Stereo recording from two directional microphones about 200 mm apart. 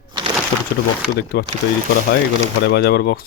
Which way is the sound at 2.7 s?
55° left (ahead or behind).